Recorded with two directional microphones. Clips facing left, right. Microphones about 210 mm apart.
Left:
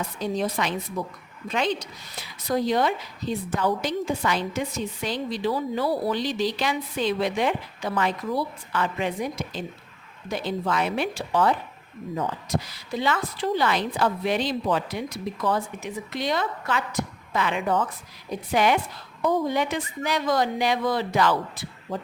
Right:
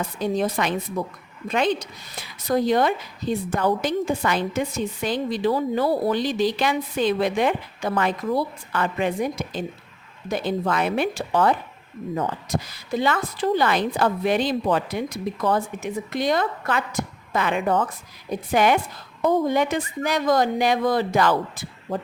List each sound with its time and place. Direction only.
0.2 s a woman's voice: 50° right (ahead or behind)
12.7 s a woman's voice: 50° right (ahead or behind)